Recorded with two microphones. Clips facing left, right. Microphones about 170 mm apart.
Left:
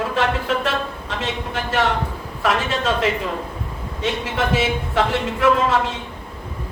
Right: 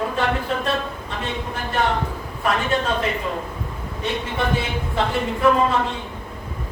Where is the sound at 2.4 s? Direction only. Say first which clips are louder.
Left 1 dB; 90° left.